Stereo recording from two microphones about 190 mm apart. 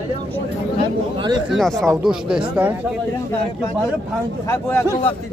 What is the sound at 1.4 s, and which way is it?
Speech, centre (ahead or behind).